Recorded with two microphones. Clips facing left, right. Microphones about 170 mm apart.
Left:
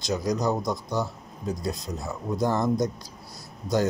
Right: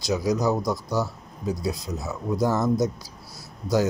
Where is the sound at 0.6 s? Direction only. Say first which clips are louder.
Right 2 dB; 20° left (ahead or behind).